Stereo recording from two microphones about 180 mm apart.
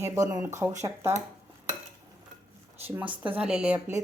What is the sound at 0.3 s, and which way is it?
Speech, 15° right (ahead or behind).